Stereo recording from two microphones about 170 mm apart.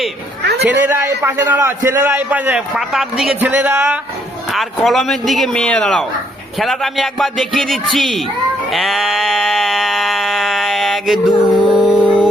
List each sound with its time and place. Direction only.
0.4 s a man's voice: 80° right
0.8 s a man's voice: 15° right (ahead or behind)
4.5 s speech: centre (ahead or behind)
8.7 s a sound: centre (ahead or behind)